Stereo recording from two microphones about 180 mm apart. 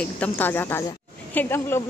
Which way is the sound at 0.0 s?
10° left (ahead or behind).